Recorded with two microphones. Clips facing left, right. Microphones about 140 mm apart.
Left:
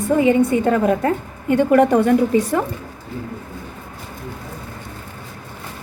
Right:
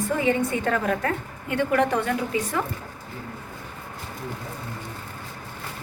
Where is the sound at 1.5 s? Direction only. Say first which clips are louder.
Left 9 dB; 45° left (ahead or behind).